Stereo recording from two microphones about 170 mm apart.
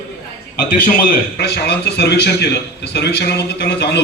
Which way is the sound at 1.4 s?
80° left.